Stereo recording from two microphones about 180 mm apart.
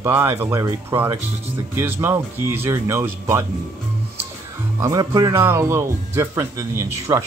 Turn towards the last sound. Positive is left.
turn(degrees=-15)  # may be behind; listen again after turning